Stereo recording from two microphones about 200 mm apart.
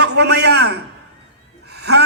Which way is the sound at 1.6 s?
55° right (ahead or behind).